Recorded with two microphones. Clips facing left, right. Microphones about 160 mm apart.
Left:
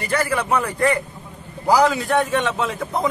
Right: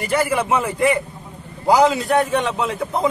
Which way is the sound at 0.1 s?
10° right (ahead or behind).